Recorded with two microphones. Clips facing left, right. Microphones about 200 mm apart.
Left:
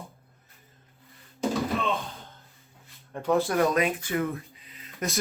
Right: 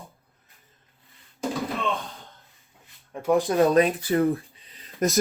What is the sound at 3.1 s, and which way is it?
Speech, 10° right (ahead or behind).